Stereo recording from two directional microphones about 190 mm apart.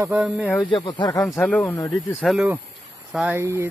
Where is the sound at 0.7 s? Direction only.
25° left (ahead or behind).